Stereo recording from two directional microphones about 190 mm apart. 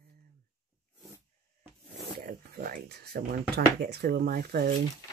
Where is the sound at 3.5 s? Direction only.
60° right (ahead or behind).